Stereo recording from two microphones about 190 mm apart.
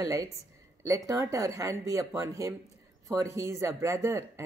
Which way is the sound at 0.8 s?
15° right (ahead or behind).